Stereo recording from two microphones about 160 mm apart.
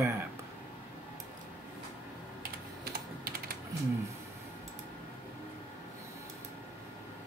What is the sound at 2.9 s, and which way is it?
Typing, 70° right (ahead or behind).